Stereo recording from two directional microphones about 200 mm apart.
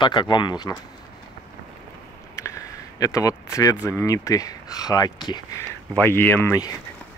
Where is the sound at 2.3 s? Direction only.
15° left (ahead or behind).